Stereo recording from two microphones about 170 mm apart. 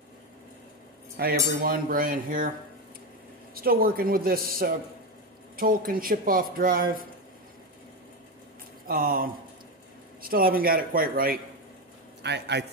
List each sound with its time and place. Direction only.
1.1 s speech: 60° right (ahead or behind)
3.5 s speech: 60° right (ahead or behind)
8.8 s speech: 55° right (ahead or behind)
12.2 s speech: 85° right